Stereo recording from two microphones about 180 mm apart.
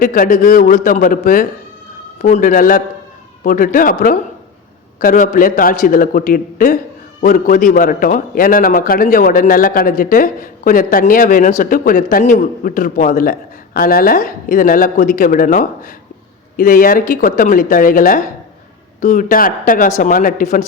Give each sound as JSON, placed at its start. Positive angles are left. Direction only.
{"t": 0.0, "sound": "a man's voice", "side_deg": 50}